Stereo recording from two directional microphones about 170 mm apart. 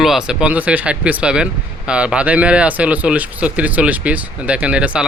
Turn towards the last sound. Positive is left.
turn(degrees=-5)  # may be behind; listen again after turning